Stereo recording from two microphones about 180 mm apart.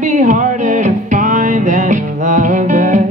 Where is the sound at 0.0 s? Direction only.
45° right (ahead or behind).